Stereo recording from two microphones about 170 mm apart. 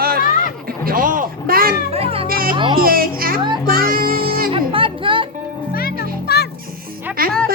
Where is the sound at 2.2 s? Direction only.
60° right (ahead or behind).